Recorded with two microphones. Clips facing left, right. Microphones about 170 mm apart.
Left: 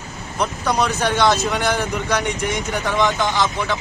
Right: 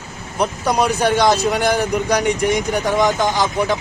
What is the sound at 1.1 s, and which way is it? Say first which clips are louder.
A man's voice: right 2 dB; 35° right (ahead or behind).